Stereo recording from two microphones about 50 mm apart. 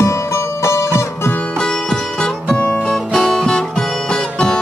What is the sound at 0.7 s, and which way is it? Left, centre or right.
Music, left.